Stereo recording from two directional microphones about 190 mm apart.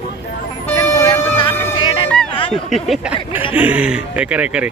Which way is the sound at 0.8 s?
20° left (ahead or behind).